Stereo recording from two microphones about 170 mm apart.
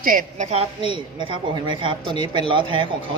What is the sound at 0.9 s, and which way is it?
Speech, 30° right (ahead or behind).